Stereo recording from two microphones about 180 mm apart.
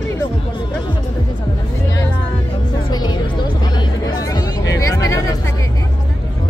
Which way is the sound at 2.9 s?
25° left (ahead or behind).